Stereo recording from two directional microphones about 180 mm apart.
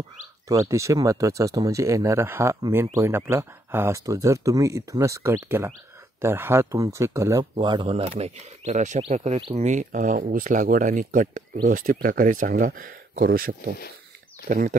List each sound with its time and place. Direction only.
0.5 s speech: 15° right (ahead or behind); by 14.8 s 45° right (ahead or behind)